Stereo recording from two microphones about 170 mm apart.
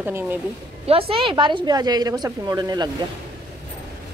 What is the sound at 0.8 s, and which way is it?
Speech, 35° right (ahead or behind).